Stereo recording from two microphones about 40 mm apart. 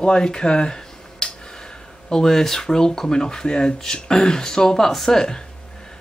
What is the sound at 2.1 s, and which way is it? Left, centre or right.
Speech, centre.